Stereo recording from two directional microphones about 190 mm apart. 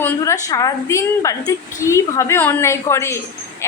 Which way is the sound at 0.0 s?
15° left (ahead or behind).